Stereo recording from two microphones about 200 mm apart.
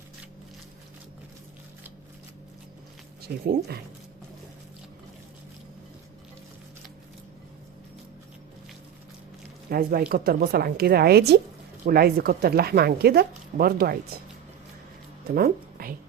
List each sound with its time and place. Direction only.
3.2 s speech: 50° right (ahead or behind)
9.6 s speech: 50° right (ahead or behind)
14.1 s a sound: 50° right (ahead or behind)
15.4 s a woman's voice: 45° right (ahead or behind)